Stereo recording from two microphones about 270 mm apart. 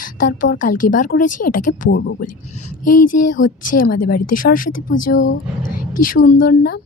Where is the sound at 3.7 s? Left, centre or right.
Left.